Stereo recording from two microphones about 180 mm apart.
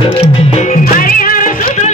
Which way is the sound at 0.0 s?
35° left (ahead or behind).